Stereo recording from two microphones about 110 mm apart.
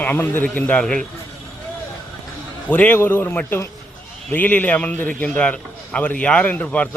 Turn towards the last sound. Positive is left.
turn(degrees=15)  # may be behind; listen again after turning